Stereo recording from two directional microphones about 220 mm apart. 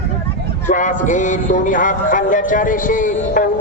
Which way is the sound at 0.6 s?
35° left (ahead or behind).